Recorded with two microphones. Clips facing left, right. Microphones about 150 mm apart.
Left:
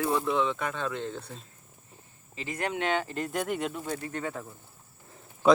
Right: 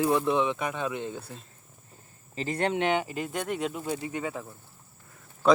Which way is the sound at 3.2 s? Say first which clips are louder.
Even; centre (ahead or behind).